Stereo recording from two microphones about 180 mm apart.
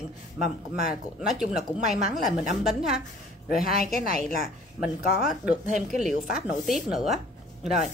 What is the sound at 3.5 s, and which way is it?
Speech, 55° left (ahead or behind).